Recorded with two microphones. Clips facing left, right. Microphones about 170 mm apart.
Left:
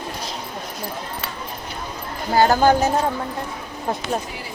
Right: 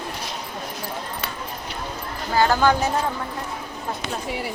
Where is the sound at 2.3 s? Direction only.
40° left (ahead or behind).